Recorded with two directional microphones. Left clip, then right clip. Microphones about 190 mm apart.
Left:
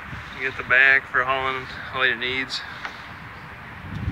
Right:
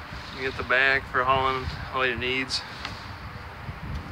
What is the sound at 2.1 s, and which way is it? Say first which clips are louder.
Speech: left 6 dB; 90° right.